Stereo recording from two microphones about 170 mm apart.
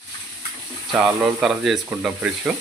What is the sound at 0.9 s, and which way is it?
Speech, 5° right (ahead or behind).